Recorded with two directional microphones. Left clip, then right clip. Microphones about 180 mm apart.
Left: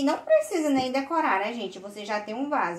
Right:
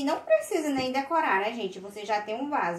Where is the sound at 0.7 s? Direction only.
35° left (ahead or behind).